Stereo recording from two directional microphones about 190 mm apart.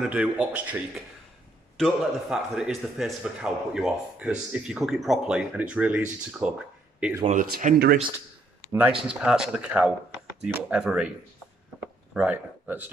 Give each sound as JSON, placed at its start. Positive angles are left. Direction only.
{"t": 0.0, "sound": "a man's voice", "side_deg": -5}
{"t": 7.2, "sound": "speech", "side_deg": -45}
{"t": 8.7, "sound": "a man's voice", "side_deg": -5}
{"t": 11.8, "sound": "a sound", "side_deg": -5}